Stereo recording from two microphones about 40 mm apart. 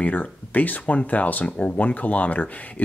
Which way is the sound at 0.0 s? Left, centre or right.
Left.